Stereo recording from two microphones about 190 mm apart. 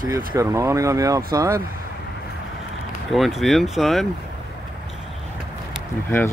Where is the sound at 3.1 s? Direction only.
Centre (ahead or behind).